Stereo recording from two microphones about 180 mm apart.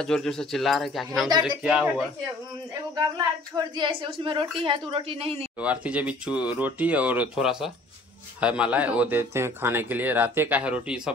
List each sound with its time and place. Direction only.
0.0 s speech: 5° left (ahead or behind)
3.2 s a woman's voice: 25° right (ahead or behind)
5.6 s speech: 10° right (ahead or behind)